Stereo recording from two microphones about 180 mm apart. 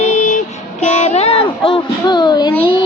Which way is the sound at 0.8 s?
40° left (ahead or behind).